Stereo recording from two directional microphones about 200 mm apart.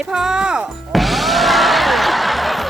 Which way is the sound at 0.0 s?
5° right (ahead or behind).